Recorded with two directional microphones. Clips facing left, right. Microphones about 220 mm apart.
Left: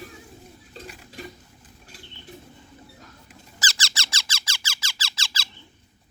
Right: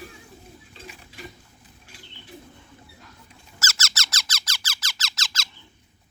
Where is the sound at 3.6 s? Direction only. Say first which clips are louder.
Even; 15° left (ahead or behind).